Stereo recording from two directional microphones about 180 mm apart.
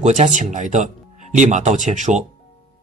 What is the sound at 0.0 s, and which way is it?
Speech, 40° right (ahead or behind).